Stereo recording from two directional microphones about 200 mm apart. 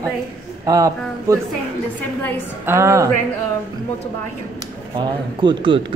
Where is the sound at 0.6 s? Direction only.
15° right (ahead or behind).